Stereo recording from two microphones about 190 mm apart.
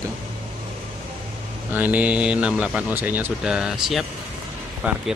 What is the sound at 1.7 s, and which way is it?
Speech, 5° right (ahead or behind).